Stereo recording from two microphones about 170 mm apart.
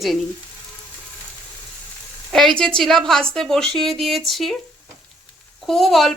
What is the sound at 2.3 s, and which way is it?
A woman's voice, centre (ahead or behind).